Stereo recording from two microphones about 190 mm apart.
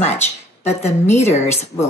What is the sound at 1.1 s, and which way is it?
Speech, 35° left (ahead or behind).